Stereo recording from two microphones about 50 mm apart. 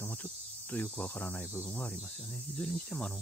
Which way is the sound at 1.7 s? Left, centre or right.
Left.